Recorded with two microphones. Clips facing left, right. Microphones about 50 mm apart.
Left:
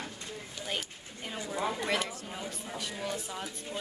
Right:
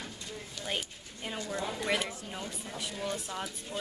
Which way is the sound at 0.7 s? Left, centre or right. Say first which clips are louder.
Right 1 dB; centre.